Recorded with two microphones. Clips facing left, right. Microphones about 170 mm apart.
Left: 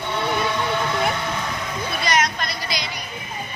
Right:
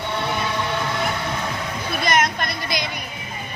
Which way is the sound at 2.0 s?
50° right (ahead or behind).